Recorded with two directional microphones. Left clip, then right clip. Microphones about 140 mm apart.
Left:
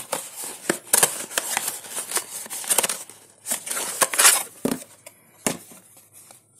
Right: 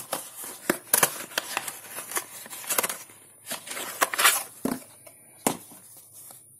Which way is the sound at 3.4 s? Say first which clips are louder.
Left 5 dB; 40° left (ahead or behind).